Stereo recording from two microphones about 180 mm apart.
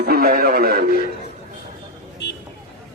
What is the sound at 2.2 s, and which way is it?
Vehicle, 70° left (ahead or behind).